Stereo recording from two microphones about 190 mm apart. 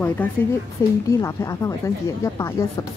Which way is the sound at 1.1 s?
15° left (ahead or behind).